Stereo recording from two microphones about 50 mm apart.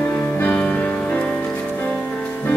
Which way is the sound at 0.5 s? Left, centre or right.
Left.